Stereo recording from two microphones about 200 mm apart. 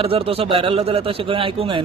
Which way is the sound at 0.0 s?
30° right (ahead or behind).